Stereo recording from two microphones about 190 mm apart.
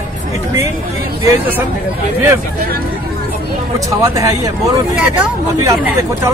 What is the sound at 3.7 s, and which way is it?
A man's voice, 15° right (ahead or behind).